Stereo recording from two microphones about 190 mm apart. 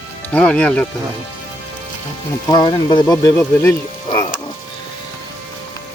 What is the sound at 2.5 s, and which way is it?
Speech, 25° left (ahead or behind).